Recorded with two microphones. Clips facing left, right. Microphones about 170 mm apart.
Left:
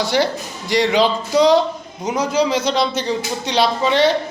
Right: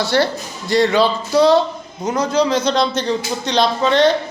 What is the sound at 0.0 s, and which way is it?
Speech, 15° left (ahead or behind).